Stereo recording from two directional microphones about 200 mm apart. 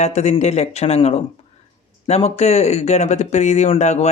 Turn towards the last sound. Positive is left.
turn(degrees=35)  # may be behind; listen again after turning